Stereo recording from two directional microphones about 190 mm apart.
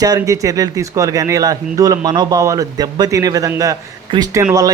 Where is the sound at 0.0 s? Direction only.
20° right (ahead or behind).